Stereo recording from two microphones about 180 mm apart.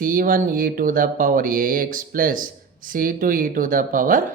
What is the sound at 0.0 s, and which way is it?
Speech, 50° right (ahead or behind).